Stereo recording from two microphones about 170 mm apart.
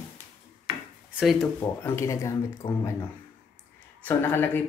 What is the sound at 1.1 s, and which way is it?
Speech, centre (ahead or behind).